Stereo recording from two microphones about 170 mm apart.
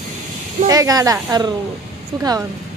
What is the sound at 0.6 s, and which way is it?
Speech, 20° right (ahead or behind).